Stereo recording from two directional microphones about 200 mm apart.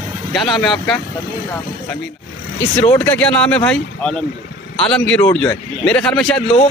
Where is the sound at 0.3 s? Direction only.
Centre (ahead or behind).